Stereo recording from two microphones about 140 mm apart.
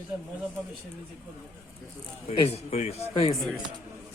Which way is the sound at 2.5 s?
50° left (ahead or behind).